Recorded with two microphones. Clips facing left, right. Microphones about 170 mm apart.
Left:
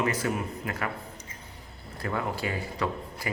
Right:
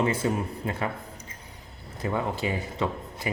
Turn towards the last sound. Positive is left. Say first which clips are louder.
# right 2 dB
turn(degrees=-20)  # may be behind; listen again after turning